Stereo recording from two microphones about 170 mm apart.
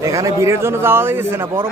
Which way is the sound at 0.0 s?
20° right (ahead or behind).